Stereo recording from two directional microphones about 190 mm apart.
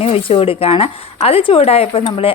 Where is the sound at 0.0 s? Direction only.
30° left (ahead or behind).